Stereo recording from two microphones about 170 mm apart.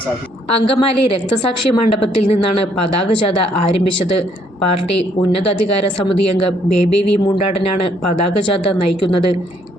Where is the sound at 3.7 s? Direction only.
35° left (ahead or behind).